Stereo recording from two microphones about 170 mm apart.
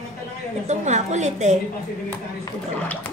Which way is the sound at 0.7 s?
40° right (ahead or behind).